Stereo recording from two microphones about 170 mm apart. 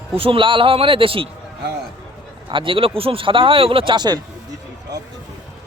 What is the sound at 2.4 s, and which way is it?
Speech, 30° right (ahead or behind).